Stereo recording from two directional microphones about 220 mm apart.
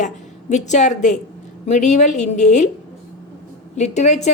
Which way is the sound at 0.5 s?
35° left (ahead or behind).